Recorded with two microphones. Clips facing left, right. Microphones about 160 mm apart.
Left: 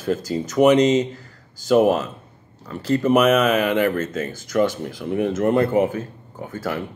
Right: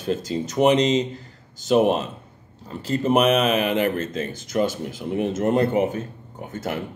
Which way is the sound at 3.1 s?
30° right (ahead or behind).